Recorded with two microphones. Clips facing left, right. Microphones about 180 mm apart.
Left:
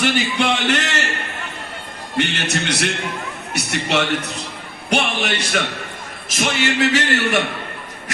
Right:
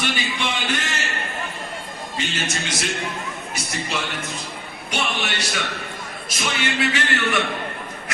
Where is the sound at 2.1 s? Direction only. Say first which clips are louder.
Left 7 dB; 65° left (ahead or behind).